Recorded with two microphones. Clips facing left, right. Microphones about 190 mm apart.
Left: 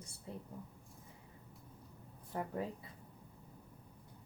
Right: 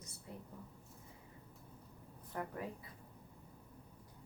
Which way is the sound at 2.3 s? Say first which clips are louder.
Left 2 dB; 25° left (ahead or behind).